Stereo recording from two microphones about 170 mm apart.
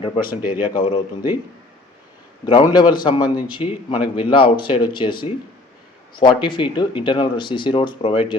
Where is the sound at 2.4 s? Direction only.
25° left (ahead or behind).